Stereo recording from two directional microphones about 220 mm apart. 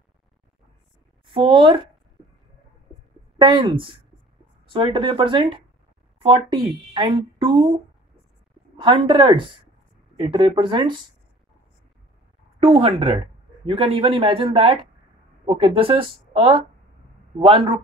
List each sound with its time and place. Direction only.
1.3 s speech: 20° right (ahead or behind)
3.3 s speech: 20° right (ahead or behind)
8.8 s speech: 20° right (ahead or behind)
12.6 s speech: 25° right (ahead or behind)